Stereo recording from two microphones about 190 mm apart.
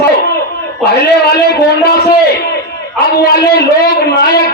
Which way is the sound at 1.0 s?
55° left (ahead or behind).